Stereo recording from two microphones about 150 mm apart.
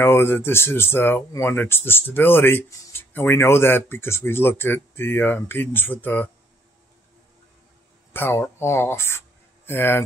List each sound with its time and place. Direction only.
0.0 s speech: 15° left (ahead or behind)
8.1 s speech: 15° left (ahead or behind)